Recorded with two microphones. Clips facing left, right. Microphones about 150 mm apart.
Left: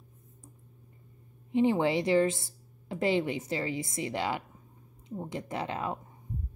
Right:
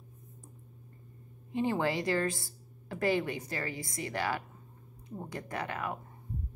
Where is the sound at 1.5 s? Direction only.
20° left (ahead or behind).